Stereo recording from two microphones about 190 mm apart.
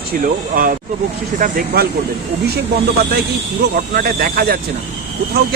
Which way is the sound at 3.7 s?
50° right (ahead or behind).